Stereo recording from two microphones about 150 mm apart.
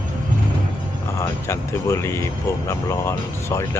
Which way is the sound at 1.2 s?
20° left (ahead or behind).